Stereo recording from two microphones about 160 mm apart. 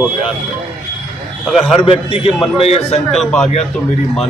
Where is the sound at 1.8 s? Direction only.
35° left (ahead or behind).